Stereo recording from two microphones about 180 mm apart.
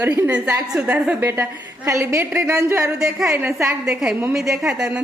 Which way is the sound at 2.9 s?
5° right (ahead or behind).